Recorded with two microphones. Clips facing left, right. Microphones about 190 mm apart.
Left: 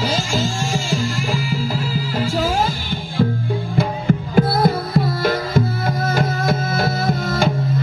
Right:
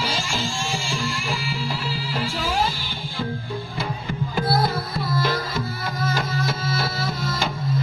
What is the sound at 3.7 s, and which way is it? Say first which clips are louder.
Music: left 12 dB; 50° left (ahead or behind).